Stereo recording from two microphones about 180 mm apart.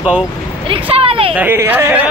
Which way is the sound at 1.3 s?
10° right (ahead or behind).